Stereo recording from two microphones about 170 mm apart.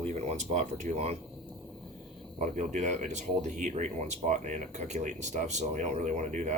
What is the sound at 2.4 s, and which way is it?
Speech, 45° right (ahead or behind).